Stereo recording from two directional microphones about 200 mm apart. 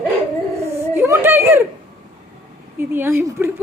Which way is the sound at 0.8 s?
15° right (ahead or behind).